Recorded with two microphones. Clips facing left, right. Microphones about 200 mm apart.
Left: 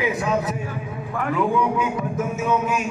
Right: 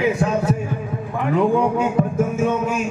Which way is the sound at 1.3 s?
50° right (ahead or behind).